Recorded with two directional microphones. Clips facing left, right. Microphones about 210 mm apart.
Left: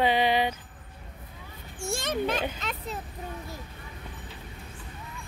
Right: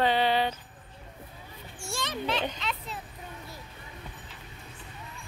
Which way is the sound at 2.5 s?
45° left (ahead or behind).